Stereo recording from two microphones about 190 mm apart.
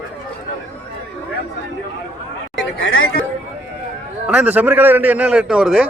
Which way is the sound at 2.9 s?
90° left.